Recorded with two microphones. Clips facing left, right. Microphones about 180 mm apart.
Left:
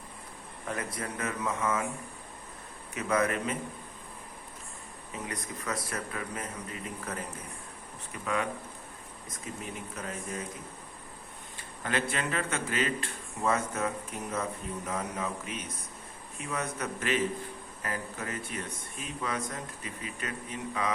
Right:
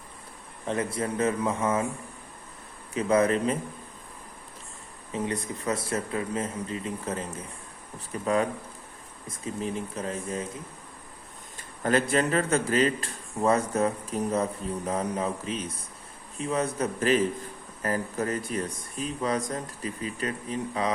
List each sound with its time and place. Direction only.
0.7 s speech: 25° right (ahead or behind)
2.9 s speech: 30° right (ahead or behind)
5.1 s speech: 30° right (ahead or behind)
11.8 s speech: 40° right (ahead or behind)